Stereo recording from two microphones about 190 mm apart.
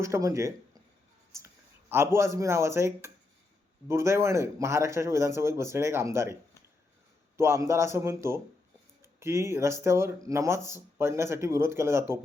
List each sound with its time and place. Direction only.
0.0 s speech: 15° right (ahead or behind)
7.3 s speech: 15° right (ahead or behind)